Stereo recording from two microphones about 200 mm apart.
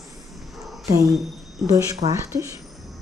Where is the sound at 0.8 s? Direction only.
15° right (ahead or behind).